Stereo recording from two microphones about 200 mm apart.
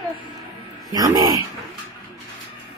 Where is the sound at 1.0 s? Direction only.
20° right (ahead or behind).